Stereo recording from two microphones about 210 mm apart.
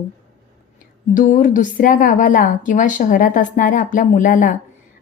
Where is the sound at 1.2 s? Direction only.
40° left (ahead or behind).